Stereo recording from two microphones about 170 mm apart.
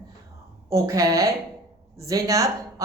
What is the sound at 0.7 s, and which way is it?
Speech, 20° right (ahead or behind).